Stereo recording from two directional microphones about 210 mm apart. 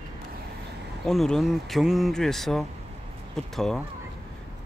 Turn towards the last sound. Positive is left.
turn(degrees=0)  # may be behind; listen again after turning